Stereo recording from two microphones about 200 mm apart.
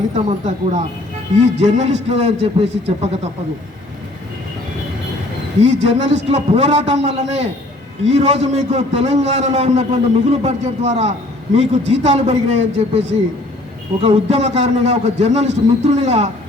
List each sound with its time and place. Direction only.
0.1 s a man's voice: 35° right (ahead or behind)
5.6 s a man's voice: 35° right (ahead or behind)